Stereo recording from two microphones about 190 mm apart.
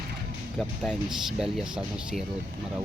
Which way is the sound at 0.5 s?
5° right (ahead or behind).